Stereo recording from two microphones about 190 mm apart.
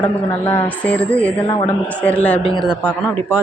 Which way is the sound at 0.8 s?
5° left (ahead or behind).